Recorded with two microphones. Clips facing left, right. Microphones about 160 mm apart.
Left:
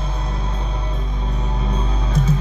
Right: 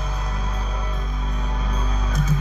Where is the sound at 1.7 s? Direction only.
30° left (ahead or behind).